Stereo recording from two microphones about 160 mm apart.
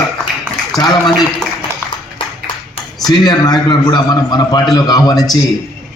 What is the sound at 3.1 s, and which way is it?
A man's voice, 25° left (ahead or behind).